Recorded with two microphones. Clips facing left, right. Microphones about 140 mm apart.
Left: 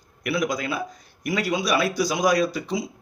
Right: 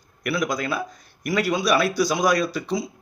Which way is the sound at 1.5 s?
15° left (ahead or behind).